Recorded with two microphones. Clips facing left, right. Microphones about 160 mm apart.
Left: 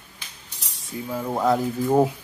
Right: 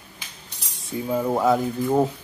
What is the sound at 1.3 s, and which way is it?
Speech, centre (ahead or behind).